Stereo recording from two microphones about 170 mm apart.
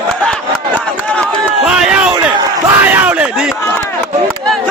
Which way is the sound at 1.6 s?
5° right (ahead or behind).